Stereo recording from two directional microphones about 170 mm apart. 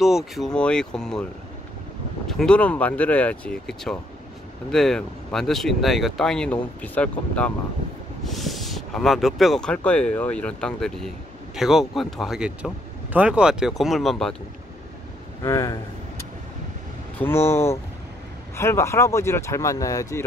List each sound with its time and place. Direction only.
0.0 s speech: centre (ahead or behind)
2.2 s speech: 5° left (ahead or behind)
15.4 s a sound: 20° left (ahead or behind)
17.2 s speech: 15° left (ahead or behind)